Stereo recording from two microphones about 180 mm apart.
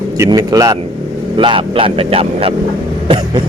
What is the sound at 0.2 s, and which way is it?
A man's voice, 20° right (ahead or behind).